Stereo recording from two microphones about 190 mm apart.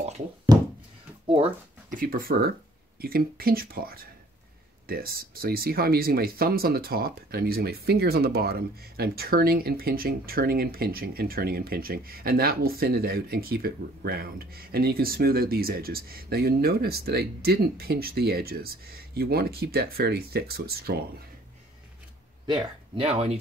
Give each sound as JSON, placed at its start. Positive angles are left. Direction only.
{"t": 1.9, "sound": "speech", "side_deg": -45}
{"t": 22.5, "sound": "speech", "side_deg": -30}